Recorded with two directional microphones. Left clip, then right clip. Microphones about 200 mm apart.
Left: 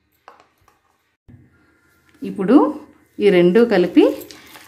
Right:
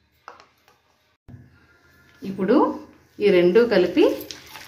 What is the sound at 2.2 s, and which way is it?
A woman's voice, 50° left (ahead or behind).